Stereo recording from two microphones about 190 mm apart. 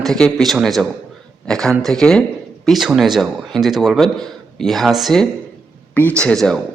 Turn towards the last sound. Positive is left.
turn(degrees=5)  # may be behind; listen again after turning